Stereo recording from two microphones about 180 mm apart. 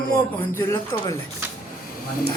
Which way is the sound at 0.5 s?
15° left (ahead or behind).